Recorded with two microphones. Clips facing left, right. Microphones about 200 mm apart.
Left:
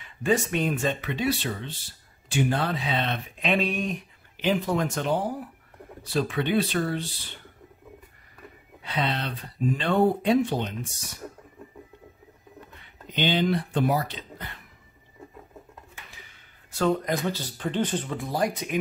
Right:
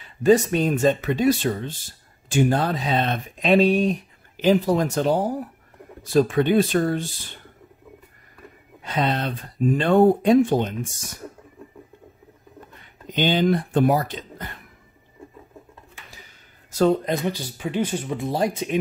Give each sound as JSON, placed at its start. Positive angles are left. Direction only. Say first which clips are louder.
{"t": 0.0, "sound": "speech", "louder": "right 8 dB", "side_deg": -35}
{"t": 8.8, "sound": "speech", "louder": "right 5 dB", "side_deg": -45}
{"t": 12.8, "sound": "speech", "louder": "right 4 dB", "side_deg": -45}
{"t": 16.7, "sound": "speech", "louder": "right 5 dB", "side_deg": -30}
{"t": 17.2, "sound": "speech", "louder": "right 2 dB", "side_deg": -15}